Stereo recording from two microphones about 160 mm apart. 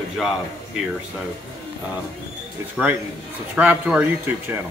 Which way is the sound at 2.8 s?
5° right (ahead or behind).